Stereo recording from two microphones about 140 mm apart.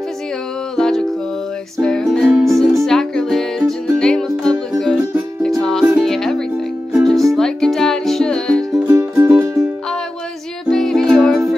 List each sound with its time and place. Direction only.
0.7 s music: 5° left (ahead or behind)
8.8 s music: 20° right (ahead or behind)
10.7 s music: 5° left (ahead or behind)